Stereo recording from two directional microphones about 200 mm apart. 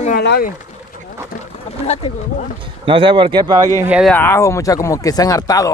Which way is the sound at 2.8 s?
25° right (ahead or behind).